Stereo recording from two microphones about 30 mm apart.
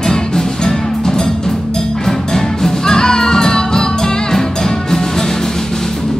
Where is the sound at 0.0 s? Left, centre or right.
Left.